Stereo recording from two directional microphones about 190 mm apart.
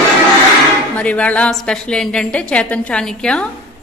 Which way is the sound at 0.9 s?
5° left (ahead or behind).